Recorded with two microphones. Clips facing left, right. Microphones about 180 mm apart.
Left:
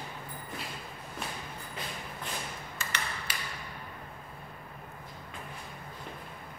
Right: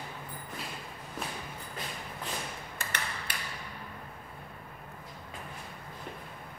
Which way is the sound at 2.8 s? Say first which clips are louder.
Even; 55° right (ahead or behind).